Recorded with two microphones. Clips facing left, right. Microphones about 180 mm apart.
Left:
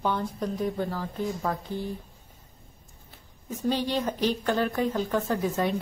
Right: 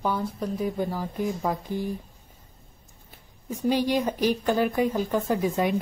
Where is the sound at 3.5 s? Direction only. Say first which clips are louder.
Right 3 dB; 10° right (ahead or behind).